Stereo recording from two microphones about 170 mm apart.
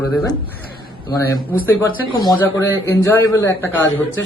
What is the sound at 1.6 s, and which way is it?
Speech, 15° left (ahead or behind).